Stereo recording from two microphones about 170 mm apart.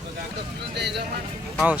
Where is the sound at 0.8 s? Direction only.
80° right.